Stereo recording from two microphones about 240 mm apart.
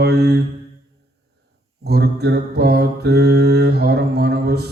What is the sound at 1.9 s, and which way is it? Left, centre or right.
Mantra, right.